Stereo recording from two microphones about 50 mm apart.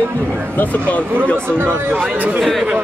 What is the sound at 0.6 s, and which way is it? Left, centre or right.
Speech, left.